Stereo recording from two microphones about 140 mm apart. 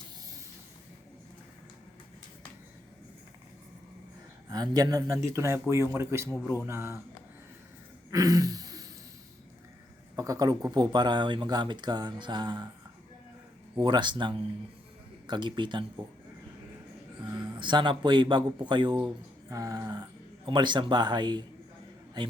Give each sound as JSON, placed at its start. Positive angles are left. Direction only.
{"t": 4.4, "sound": "speech", "side_deg": -30}
{"t": 6.4, "sound": "speech", "side_deg": -10}
{"t": 6.7, "sound": "speech", "side_deg": -20}
{"t": 8.1, "sound": "a sound", "side_deg": -25}
{"t": 10.2, "sound": "speech", "side_deg": -25}
{"t": 13.8, "sound": "speech", "side_deg": -35}
{"t": 17.2, "sound": "speech", "side_deg": -35}